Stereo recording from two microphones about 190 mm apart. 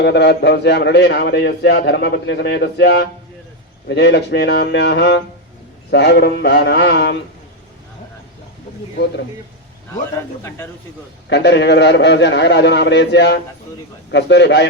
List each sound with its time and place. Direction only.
0.0 s a man's voice: 65° left (ahead or behind)
11.3 s a man's voice: 65° left (ahead or behind)